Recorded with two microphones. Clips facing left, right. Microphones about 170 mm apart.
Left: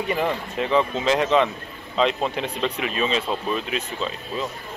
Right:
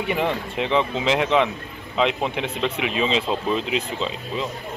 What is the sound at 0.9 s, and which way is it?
Speech, 15° right (ahead or behind).